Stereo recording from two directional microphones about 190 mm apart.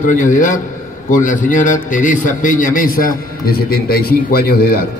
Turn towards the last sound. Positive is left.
turn(degrees=50)  # may be behind; listen again after turning